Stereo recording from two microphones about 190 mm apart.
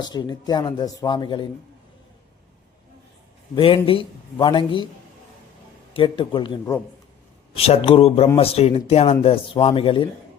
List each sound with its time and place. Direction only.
0.0 s speech: 20° left (ahead or behind)
3.5 s speech: 30° left (ahead or behind)
5.9 s speech: 25° left (ahead or behind)